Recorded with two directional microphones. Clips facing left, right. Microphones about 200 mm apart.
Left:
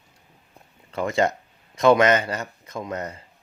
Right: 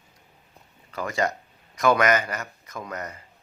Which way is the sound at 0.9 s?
25° left (ahead or behind).